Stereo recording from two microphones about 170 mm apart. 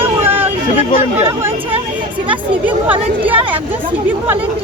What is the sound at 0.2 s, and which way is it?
Chatter, 10° right (ahead or behind).